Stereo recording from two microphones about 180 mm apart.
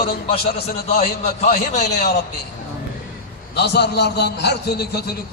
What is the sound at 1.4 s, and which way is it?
Speech, 40° left (ahead or behind).